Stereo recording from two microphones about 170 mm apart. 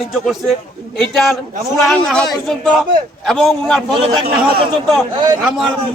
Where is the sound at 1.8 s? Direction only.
5° left (ahead or behind).